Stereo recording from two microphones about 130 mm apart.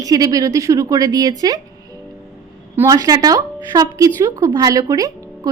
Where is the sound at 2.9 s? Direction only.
30° right (ahead or behind).